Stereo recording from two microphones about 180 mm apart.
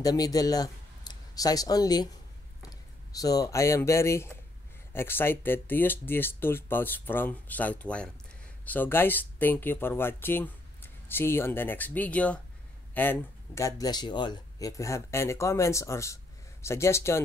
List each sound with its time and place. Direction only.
0.0 s speech: 20° left (ahead or behind)